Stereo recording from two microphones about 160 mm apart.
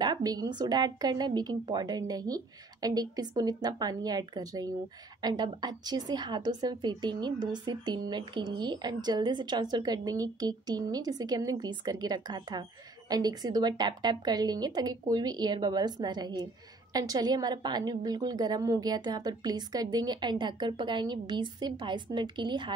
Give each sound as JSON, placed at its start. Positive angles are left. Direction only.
{"t": 0.0, "sound": "a woman's voice", "side_deg": -25}